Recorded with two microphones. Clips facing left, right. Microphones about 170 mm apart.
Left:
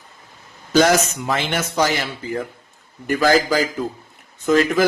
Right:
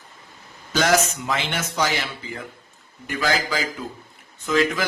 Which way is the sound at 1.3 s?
45° left (ahead or behind).